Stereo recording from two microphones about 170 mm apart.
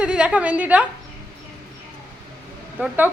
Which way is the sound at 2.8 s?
5° right (ahead or behind).